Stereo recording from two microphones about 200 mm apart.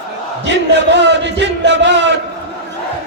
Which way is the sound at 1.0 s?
60° right (ahead or behind).